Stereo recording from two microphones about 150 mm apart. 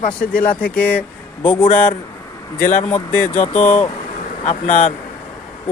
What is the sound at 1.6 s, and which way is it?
Speech, 55° left (ahead or behind).